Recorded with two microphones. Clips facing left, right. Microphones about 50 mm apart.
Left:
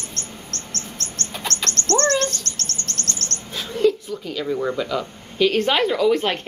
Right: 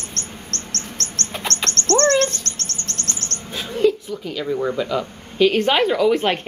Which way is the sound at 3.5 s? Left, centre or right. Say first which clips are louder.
Right 1 dB; centre.